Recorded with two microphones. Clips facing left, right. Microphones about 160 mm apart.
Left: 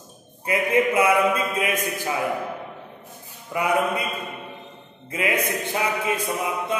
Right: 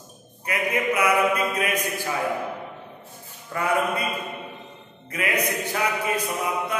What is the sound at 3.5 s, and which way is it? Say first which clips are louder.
Speech: left 2 dB; 15° left (ahead or behind).